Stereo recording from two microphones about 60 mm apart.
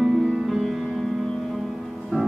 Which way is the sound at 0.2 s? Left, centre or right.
Centre.